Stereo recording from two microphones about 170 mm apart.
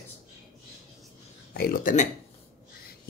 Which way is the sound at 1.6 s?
60° left (ahead or behind).